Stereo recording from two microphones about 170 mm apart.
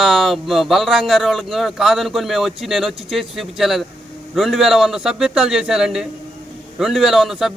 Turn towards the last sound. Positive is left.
turn(degrees=0)  # may be behind; listen again after turning